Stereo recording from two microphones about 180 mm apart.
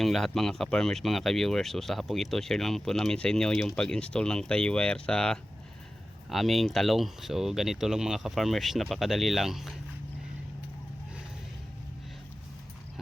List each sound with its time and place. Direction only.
0.0 s speech: centre (ahead or behind)